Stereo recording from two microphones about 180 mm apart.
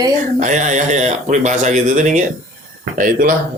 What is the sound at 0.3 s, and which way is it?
Speech, 40° right (ahead or behind).